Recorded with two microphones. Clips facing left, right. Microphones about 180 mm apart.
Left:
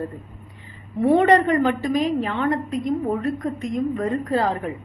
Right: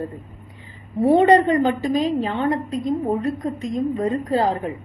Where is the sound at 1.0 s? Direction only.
30° right (ahead or behind).